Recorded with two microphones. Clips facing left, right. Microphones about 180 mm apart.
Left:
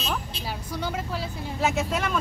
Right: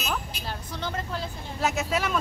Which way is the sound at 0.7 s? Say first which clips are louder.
Left 2 dB; 10° left (ahead or behind).